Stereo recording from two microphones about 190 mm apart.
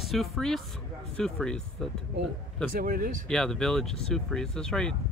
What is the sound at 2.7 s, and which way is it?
Speech, 50° right (ahead or behind).